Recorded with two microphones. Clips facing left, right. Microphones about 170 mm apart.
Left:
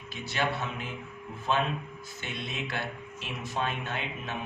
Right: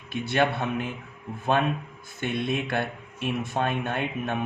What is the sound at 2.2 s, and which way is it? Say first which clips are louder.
Speech: right 10 dB; 55° right (ahead or behind).